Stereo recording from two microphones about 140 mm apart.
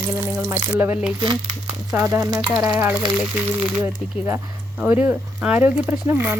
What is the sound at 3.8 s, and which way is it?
A woman's voice, 15° right (ahead or behind).